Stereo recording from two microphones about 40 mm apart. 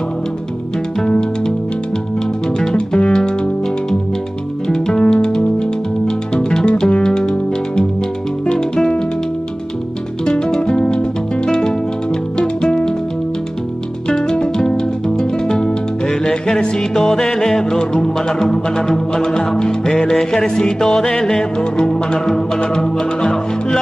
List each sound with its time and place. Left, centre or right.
1.0 s music: left
3.1 s music: centre
4.6 s music: centre
10.2 s music: left
14.0 s music: centre